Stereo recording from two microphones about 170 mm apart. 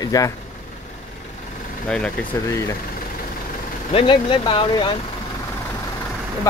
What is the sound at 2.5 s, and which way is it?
Speech, 15° left (ahead or behind).